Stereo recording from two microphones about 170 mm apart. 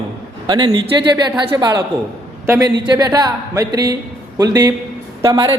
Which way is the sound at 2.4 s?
15° right (ahead or behind).